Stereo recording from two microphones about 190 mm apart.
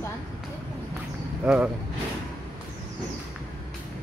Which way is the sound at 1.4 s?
5° right (ahead or behind).